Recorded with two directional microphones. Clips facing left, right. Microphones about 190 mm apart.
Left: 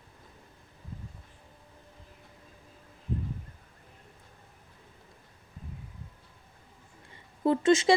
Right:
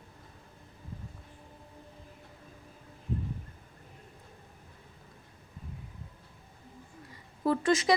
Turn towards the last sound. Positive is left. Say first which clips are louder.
# left 4 dB
turn(degrees=25)  # may be behind; listen again after turning